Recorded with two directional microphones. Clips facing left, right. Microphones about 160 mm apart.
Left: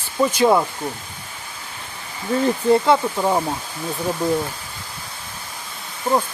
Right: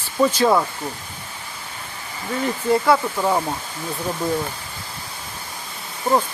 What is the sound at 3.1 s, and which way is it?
Speech, 10° left (ahead or behind).